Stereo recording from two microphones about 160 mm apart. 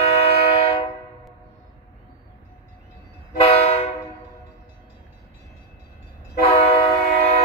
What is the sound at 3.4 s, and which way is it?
Train, 40° left (ahead or behind).